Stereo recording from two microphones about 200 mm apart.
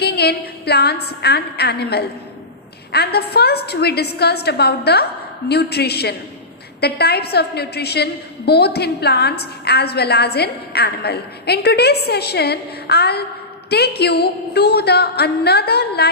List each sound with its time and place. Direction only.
0.0 s a woman's voice: 55° left (ahead or behind)